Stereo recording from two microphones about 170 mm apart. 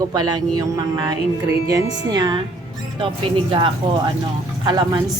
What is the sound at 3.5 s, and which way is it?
Speech, 25° right (ahead or behind).